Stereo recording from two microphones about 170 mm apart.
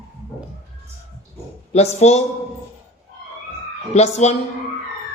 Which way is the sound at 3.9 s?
40° left (ahead or behind).